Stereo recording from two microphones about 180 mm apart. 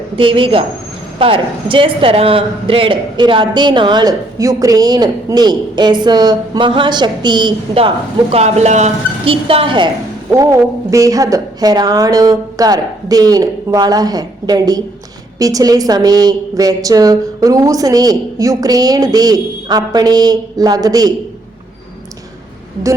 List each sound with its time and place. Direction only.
0.2 s speech: 30° right (ahead or behind)